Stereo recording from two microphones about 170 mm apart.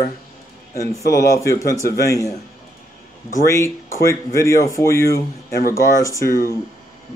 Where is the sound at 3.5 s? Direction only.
15° left (ahead or behind).